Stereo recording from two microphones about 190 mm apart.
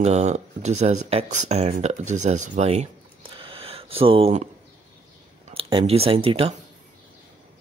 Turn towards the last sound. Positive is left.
turn(degrees=-30)  # may be behind; listen again after turning